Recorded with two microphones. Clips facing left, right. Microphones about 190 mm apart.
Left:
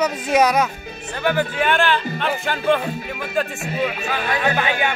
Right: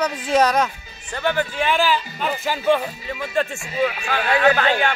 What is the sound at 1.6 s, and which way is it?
Speech, centre (ahead or behind).